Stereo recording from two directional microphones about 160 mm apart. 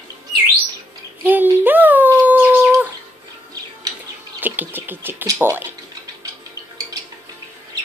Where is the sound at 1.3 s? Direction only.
10° right (ahead or behind).